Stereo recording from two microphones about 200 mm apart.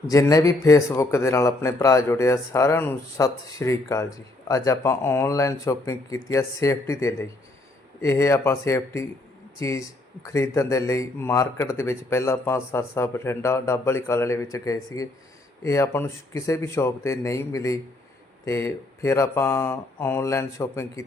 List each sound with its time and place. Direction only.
0.1 s speech: 15° left (ahead or behind)